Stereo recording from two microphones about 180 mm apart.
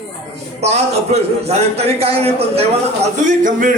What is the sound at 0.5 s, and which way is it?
A man's voice, 35° right (ahead or behind).